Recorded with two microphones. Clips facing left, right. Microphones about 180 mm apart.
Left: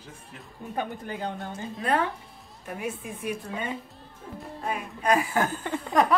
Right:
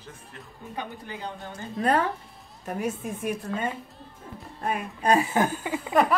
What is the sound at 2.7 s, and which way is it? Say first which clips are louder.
A woman's voice: right 4 dB; 40° right (ahead or behind).